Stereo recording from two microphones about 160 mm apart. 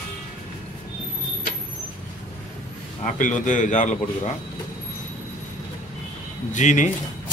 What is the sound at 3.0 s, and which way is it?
A man's voice, 50° left (ahead or behind).